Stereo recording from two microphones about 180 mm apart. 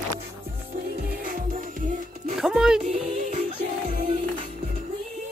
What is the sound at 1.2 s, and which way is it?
Music, 50° right (ahead or behind).